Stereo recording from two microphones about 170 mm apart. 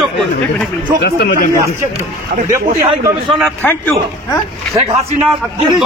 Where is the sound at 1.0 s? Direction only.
80° left.